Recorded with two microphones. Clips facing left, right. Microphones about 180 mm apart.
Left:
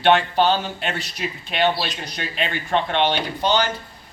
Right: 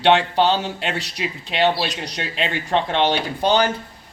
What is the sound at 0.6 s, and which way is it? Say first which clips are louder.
Speech: right 2 dB; 80° right.